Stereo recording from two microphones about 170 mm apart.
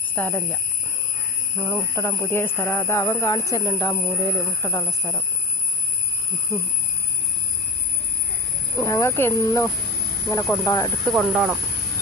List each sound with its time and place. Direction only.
0.2 s speech: 10° left (ahead or behind)
8.7 s speech: 20° left (ahead or behind)
11.0 s speech: centre (ahead or behind)